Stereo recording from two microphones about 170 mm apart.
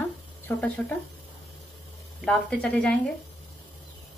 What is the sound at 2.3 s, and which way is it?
Speech, 5° left (ahead or behind).